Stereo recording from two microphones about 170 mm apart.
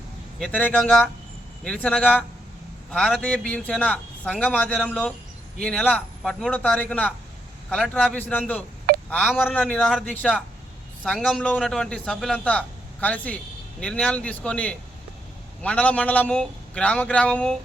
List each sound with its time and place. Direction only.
0.3 s a man's voice: 5° left (ahead or behind)